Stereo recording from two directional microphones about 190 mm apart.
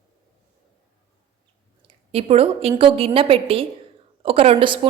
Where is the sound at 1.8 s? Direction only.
30° right (ahead or behind).